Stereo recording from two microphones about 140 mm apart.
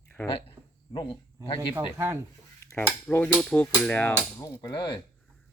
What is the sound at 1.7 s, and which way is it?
Speech, 20° right (ahead or behind).